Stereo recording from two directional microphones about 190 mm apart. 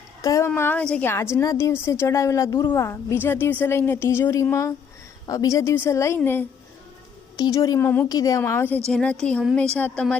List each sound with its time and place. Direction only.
0.2 s a woman's voice: 15° left (ahead or behind)